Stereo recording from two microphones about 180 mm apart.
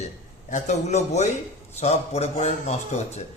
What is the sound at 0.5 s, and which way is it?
A man's voice, 40° left (ahead or behind).